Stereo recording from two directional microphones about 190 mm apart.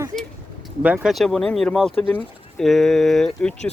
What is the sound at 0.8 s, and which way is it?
Speech, 5° right (ahead or behind).